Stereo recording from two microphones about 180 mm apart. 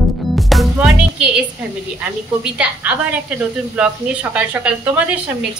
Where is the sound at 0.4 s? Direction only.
Centre (ahead or behind).